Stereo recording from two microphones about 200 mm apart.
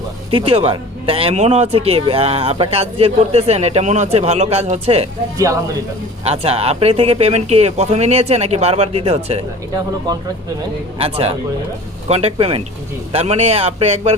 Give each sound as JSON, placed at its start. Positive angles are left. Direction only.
{"t": 0.3, "sound": "speech", "side_deg": -30}
{"t": 5.4, "sound": "speech", "side_deg": -15}
{"t": 6.2, "sound": "speech", "side_deg": -30}
{"t": 10.1, "sound": "speech", "side_deg": -20}